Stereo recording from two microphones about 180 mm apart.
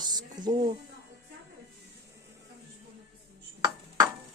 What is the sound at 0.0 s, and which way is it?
Speech, 20° right (ahead or behind).